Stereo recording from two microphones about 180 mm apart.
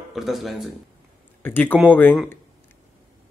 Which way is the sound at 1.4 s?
10° left (ahead or behind).